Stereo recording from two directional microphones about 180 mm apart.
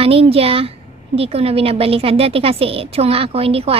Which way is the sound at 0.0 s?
35° right (ahead or behind).